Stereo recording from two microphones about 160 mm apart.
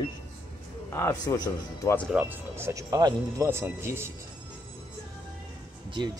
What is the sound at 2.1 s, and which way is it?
Speech, 15° right (ahead or behind).